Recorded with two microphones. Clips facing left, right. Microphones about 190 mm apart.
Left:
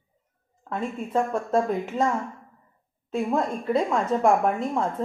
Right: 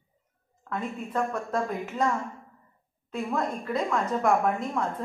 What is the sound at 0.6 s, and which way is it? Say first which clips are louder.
Speech: left 3 dB; 30° left (ahead or behind).